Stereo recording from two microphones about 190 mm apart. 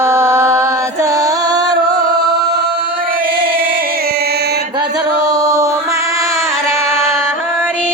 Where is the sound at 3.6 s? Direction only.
50° right (ahead or behind).